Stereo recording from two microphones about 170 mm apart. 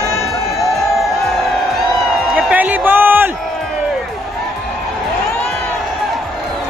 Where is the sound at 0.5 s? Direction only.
Centre (ahead or behind).